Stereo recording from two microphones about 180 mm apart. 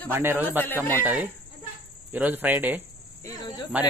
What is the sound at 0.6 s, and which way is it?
Speech, 10° left (ahead or behind).